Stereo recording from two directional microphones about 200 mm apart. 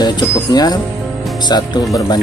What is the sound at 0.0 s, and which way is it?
Speech, 20° left (ahead or behind).